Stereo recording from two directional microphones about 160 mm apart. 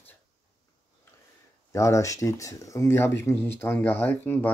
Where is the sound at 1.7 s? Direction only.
20° left (ahead or behind).